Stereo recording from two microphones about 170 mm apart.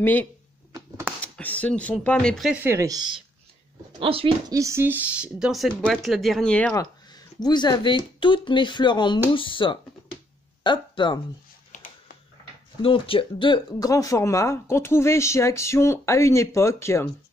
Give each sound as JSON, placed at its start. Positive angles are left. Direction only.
{"t": 0.0, "sound": "speech", "side_deg": 10}
{"t": 4.0, "sound": "speech", "side_deg": -35}
{"t": 4.5, "sound": "speech", "side_deg": -20}
{"t": 6.7, "sound": "speech", "side_deg": 25}
{"t": 11.7, "sound": "a sound", "side_deg": 55}
{"t": 12.8, "sound": "speech", "side_deg": 30}